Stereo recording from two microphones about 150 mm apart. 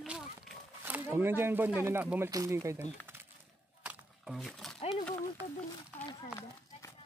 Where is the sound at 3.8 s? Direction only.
5° right (ahead or behind).